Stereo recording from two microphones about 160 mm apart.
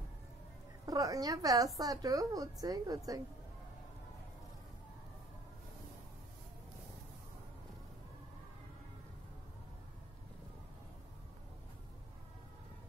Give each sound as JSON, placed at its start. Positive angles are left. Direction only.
{"t": 0.8, "sound": "a woman's voice", "side_deg": -20}